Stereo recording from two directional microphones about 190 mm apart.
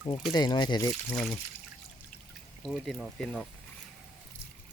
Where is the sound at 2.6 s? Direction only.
Centre (ahead or behind).